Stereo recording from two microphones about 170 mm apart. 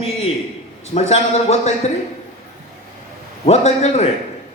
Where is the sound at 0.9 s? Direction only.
40° left (ahead or behind).